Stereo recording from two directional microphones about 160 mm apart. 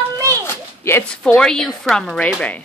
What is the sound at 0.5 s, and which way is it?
Speech, 15° left (ahead or behind).